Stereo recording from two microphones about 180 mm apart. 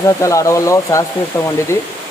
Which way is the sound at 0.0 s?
15° left (ahead or behind).